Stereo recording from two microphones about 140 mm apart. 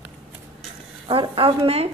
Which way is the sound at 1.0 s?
40° right (ahead or behind).